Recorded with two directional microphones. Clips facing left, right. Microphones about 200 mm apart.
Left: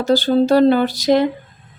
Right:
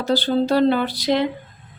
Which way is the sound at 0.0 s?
45° left (ahead or behind).